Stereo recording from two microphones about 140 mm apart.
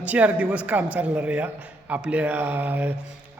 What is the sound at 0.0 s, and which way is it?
A man's voice, 10° right (ahead or behind).